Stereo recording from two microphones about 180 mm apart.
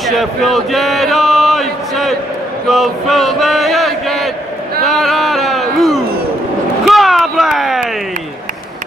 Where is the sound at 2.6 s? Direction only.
Centre (ahead or behind).